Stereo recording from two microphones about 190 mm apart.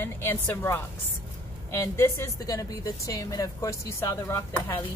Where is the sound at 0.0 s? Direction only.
10° left (ahead or behind).